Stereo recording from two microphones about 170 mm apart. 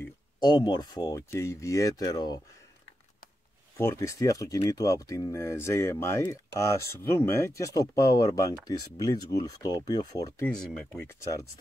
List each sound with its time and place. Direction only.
0.4 s speech: 25° left (ahead or behind)
3.7 s speech: 15° left (ahead or behind)
10.3 s speech: 5° left (ahead or behind)